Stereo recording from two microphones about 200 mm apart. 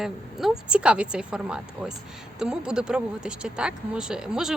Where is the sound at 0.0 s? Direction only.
Centre (ahead or behind).